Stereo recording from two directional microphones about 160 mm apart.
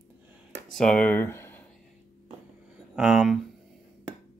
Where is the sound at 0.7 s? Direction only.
5° left (ahead or behind).